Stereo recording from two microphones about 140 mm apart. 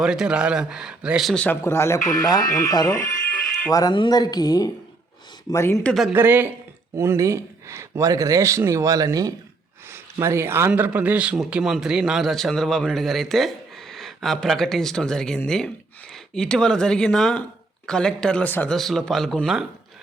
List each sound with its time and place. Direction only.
0.0 s speech: 5° right (ahead or behind)
1.5 s speech: 20° left (ahead or behind)
5.8 s speech: centre (ahead or behind)
6.1 s speech: 15° right (ahead or behind); by 18.8 s 10° left (ahead or behind)
18.8 s speech: centre (ahead or behind)